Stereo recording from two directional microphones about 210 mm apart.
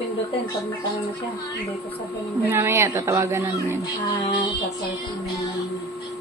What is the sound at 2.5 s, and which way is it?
Speech, 10° right (ahead or behind).